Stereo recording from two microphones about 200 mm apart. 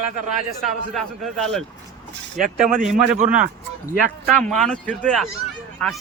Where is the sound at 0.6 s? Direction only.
Centre (ahead or behind).